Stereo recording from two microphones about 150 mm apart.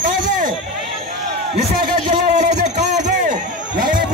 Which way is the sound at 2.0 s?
50° right (ahead or behind).